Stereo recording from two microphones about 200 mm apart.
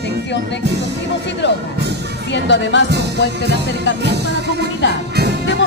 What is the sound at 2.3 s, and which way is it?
Speech, 60° left (ahead or behind).